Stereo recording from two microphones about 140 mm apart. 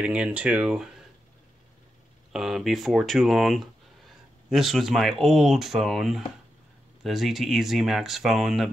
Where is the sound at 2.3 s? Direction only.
Centre (ahead or behind).